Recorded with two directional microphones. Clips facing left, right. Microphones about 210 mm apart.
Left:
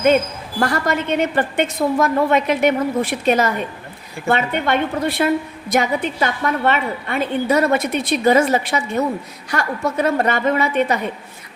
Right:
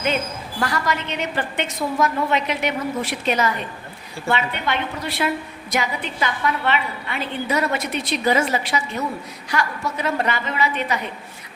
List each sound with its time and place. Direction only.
0.6 s a woman's voice: 50° left (ahead or behind)